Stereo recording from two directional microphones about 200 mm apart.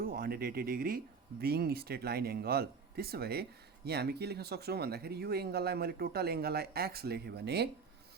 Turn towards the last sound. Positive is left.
turn(degrees=-55)  # may be behind; listen again after turning